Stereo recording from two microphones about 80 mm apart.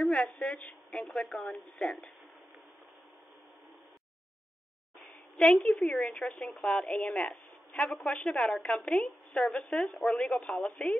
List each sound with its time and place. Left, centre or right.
0.0 s a sound: centre
1.8 s speech: centre
5.4 s speech: centre
6.2 s speech: centre
6.6 s speech: centre
10.3 s speech: centre